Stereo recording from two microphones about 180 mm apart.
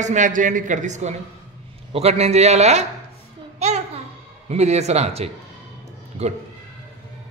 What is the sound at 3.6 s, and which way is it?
Babbling, 40° right (ahead or behind).